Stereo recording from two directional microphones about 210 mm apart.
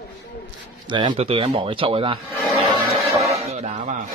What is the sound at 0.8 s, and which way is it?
Speech, 20° right (ahead or behind).